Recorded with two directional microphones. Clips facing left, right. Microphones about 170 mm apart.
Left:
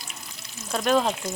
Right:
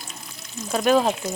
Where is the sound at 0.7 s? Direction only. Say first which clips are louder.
Right 3 dB; 5° right (ahead or behind).